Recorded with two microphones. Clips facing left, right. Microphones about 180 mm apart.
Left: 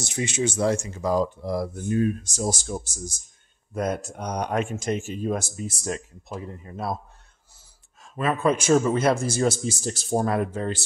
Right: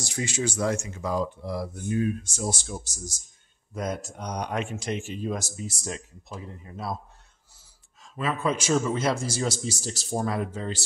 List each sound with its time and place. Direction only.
0.0 s speech: 20° left (ahead or behind); by 10.8 s 55° left (ahead or behind)